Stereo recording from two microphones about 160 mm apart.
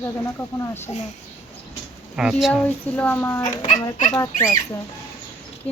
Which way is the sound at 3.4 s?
50° left (ahead or behind).